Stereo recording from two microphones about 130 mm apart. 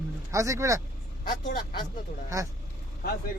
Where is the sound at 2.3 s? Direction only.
25° right (ahead or behind).